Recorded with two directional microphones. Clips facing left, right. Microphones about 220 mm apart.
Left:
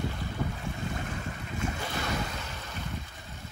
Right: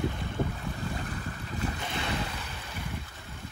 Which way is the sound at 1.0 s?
40° right (ahead or behind).